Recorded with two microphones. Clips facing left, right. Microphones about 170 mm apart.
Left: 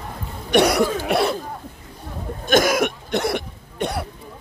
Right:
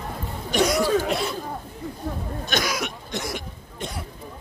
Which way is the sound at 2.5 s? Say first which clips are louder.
Left 10 dB; 50° left (ahead or behind).